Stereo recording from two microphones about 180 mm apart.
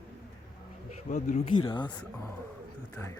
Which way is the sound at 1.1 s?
40° left (ahead or behind).